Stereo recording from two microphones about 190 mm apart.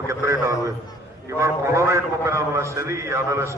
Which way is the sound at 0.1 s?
15° right (ahead or behind).